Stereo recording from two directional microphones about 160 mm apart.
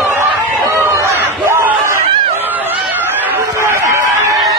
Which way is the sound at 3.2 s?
15° right (ahead or behind).